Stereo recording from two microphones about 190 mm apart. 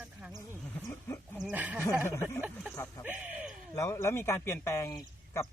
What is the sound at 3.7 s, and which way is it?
Speech, 15° left (ahead or behind).